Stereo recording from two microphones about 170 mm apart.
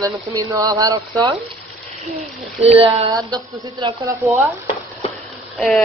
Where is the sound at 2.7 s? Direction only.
35° right (ahead or behind).